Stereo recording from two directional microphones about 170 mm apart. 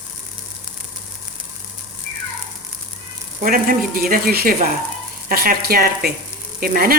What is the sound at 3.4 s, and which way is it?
Speech, 55° right (ahead or behind).